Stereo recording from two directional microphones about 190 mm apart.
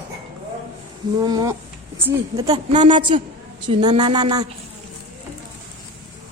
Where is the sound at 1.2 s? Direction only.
20° right (ahead or behind).